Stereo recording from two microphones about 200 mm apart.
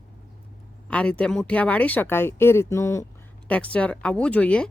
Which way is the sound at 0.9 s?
5° left (ahead or behind).